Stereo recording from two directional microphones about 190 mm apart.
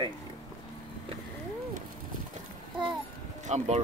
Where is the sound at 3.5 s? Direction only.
35° right (ahead or behind).